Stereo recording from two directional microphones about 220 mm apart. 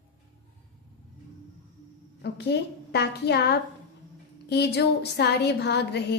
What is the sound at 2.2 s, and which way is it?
A woman's voice, 50° left (ahead or behind).